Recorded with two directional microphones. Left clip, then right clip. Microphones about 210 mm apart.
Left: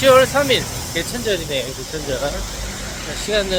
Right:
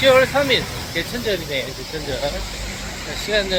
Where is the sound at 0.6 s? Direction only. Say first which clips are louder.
Left 1 dB; 55° left (ahead or behind).